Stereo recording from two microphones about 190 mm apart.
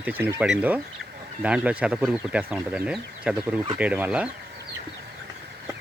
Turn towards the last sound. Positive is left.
turn(degrees=-5)  # may be behind; listen again after turning